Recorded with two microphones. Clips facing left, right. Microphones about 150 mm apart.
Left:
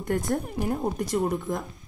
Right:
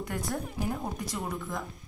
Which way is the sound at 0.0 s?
50° left (ahead or behind).